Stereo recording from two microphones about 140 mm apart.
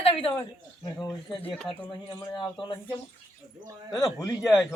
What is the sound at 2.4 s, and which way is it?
Speech, 35° left (ahead or behind).